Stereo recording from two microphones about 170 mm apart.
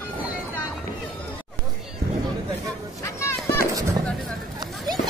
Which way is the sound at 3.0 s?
15° left (ahead or behind).